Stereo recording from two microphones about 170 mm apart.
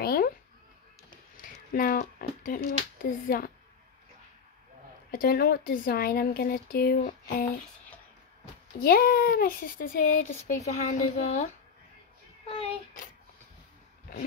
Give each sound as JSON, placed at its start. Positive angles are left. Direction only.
{"t": 0.0, "sound": "a sound", "side_deg": 65}
{"t": 1.7, "sound": "speech", "side_deg": 55}
{"t": 5.1, "sound": "speech", "side_deg": 60}
{"t": 8.7, "sound": "speech", "side_deg": 60}
{"t": 12.4, "sound": "child singing", "side_deg": 35}